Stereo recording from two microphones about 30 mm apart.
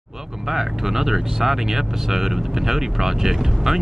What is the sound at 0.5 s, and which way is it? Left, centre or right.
Speech, centre.